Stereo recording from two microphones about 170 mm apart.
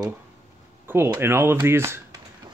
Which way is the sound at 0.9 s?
15° right (ahead or behind).